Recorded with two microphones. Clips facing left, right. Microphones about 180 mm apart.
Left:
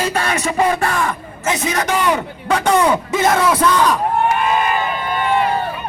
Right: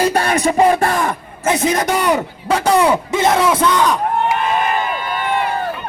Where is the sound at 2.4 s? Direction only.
30° right (ahead or behind).